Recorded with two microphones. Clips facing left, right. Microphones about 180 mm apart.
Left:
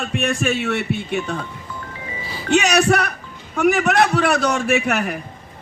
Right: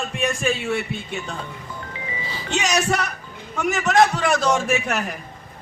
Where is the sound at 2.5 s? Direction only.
65° left (ahead or behind).